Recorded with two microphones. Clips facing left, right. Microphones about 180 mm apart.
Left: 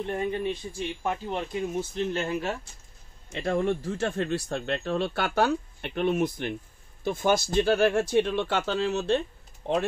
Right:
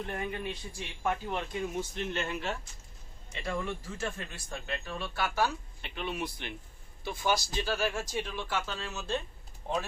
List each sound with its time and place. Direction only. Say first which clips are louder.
0.0 s speech: left 7 dB; 25° left (ahead or behind)
3.3 s speech: left 9 dB; 50° left (ahead or behind); by 9.8 s 70° left (ahead or behind)